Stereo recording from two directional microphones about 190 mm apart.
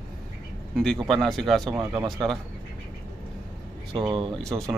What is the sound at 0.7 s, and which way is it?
A man's voice, centre (ahead or behind).